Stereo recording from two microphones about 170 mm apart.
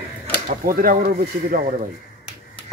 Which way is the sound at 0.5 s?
55° right (ahead or behind).